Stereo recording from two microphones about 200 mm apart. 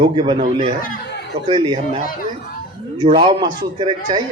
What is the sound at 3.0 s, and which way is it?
Speech, 25° right (ahead or behind).